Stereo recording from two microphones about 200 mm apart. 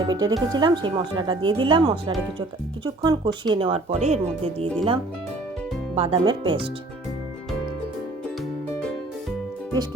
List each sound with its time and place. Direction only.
0.0 s speech: 20° right (ahead or behind)
6.0 s speech: 25° right (ahead or behind)